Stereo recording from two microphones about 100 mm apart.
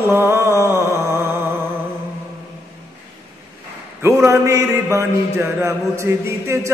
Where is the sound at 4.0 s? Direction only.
30° right (ahead or behind).